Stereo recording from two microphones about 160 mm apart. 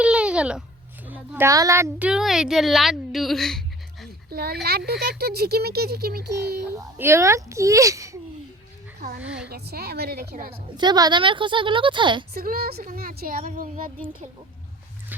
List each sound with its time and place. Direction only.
0.0 s a sound: 5° right (ahead or behind)
1.0 s a woman's voice: 10° right (ahead or behind)
2.0 s a woman's voice: 5° right (ahead or behind)
4.3 s speech: 70° right (ahead or behind)
4.9 s speech: 90° right
6.7 s speech: 15° right (ahead or behind)
9.2 s a woman's voice: 5° right (ahead or behind)
9.5 s speech: 80° right
10.5 s a woman's voice: 25° right (ahead or behind)
12.3 s a woman's voice: 70° right (ahead or behind)